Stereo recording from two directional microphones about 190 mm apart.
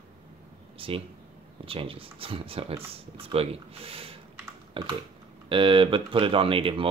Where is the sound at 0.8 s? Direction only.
30° right (ahead or behind).